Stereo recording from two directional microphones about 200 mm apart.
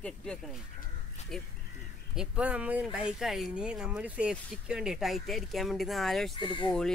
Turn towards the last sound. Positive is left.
turn(degrees=25)  # may be behind; listen again after turning